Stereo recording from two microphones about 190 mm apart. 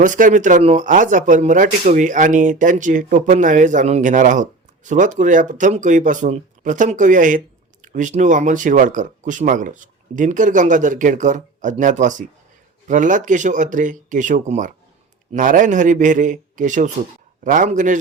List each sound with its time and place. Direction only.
0.0 s speech: 45° right (ahead or behind)